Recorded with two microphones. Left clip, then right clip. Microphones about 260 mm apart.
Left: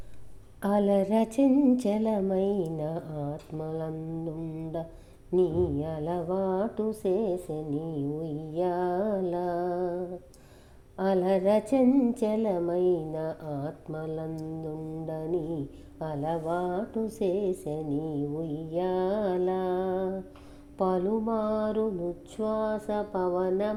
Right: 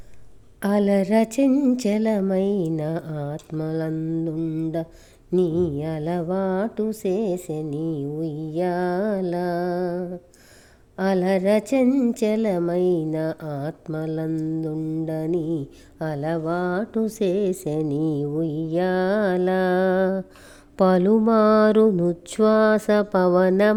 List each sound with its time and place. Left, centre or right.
0.6 s a woman's voice: centre
20.7 s mantra: right